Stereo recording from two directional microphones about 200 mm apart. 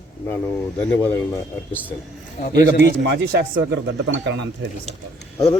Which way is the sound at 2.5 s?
60° right (ahead or behind).